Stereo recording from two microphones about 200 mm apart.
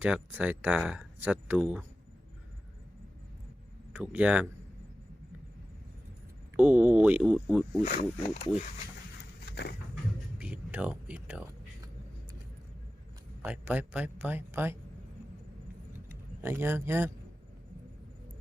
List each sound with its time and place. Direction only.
0.0 s speech: 10° right (ahead or behind)
3.9 s speech: 10° right (ahead or behind)
6.6 s speech: 10° right (ahead or behind)
7.9 s speech: 35° left (ahead or behind)
9.5 s a sound: 55° left (ahead or behind)
10.3 s a sound: 5° right (ahead or behind)
13.4 s speech: 10° right (ahead or behind)
16.0 s speech: 10° right (ahead or behind)